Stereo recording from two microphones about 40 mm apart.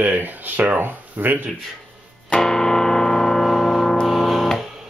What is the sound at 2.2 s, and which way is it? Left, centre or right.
Music, centre.